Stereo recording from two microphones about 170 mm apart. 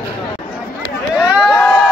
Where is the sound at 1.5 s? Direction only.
5° left (ahead or behind).